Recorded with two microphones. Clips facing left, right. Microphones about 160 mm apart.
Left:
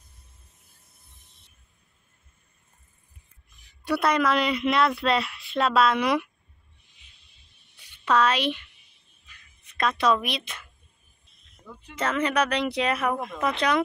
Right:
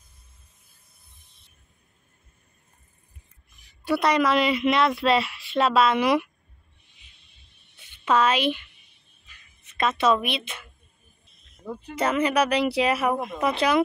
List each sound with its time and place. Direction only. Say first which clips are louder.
3.8 s a woman's voice: right 2 dB; centre (ahead or behind)
8.0 s a woman's voice: right 1 dB; 5° right (ahead or behind)
9.8 s a woman's voice: right 1 dB; 5° right (ahead or behind)
11.6 s speech: right 11 dB; 45° right (ahead or behind)
11.9 s speech: right 3 dB; 10° right (ahead or behind)